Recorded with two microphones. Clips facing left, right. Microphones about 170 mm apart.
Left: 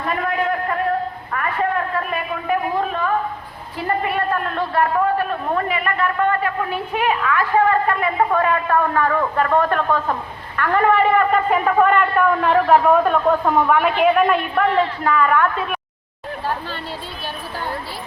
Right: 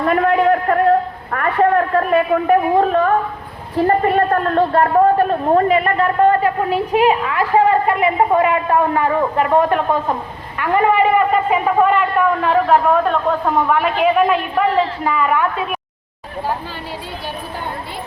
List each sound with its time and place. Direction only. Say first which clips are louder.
0.0 s a man's voice: right 7 dB; 60° right (ahead or behind); by 15.8 s 10° right (ahead or behind)